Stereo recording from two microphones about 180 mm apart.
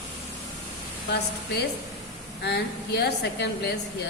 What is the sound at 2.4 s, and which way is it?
A woman's voice, 70° left (ahead or behind).